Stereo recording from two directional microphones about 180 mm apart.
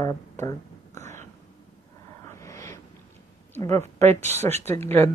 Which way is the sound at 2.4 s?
15° left (ahead or behind).